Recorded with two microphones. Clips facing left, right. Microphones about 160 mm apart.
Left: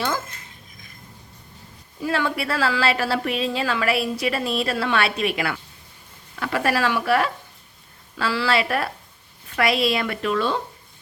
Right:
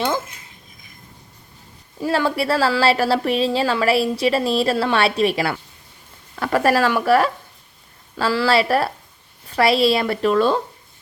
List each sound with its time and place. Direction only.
2.0 s speech: 35° right (ahead or behind)